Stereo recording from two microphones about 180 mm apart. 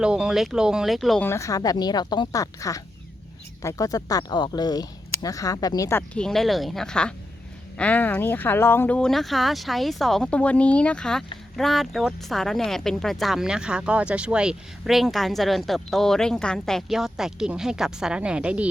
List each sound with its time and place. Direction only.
0.0 s speech: 5° right (ahead or behind)
1.2 s speech: 15° left (ahead or behind); by 18.7 s 5° right (ahead or behind)